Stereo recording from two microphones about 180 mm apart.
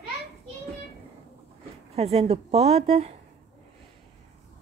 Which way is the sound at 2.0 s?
35° right (ahead or behind).